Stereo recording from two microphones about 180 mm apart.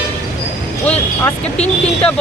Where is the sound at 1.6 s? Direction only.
5° left (ahead or behind).